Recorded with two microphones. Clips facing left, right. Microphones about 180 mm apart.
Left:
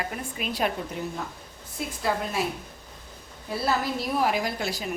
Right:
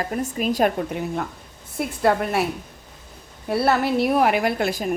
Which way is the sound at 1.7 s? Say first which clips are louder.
Right 8 dB; 60° right (ahead or behind).